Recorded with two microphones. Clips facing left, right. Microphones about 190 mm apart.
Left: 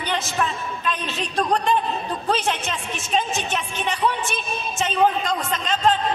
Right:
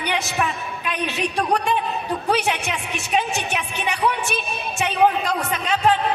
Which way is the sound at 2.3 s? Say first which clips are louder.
Right 2 dB; 65° right (ahead or behind).